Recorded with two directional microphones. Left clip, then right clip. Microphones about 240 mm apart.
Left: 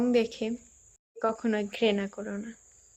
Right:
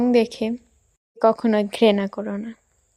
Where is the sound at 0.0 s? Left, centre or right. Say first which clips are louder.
Right 7 dB; right.